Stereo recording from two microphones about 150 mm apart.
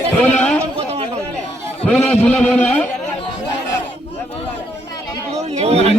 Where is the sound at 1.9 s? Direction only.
10° left (ahead or behind).